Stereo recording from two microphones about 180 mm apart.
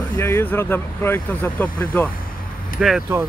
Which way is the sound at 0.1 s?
15° left (ahead or behind).